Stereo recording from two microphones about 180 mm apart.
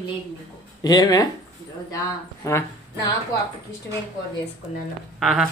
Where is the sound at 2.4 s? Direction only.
15° left (ahead or behind).